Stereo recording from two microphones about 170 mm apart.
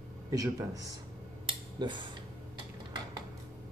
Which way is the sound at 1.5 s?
25° right (ahead or behind).